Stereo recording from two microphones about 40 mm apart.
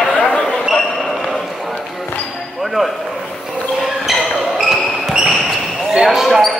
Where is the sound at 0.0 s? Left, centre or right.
Centre.